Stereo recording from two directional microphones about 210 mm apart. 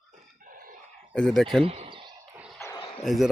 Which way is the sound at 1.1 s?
5° left (ahead or behind).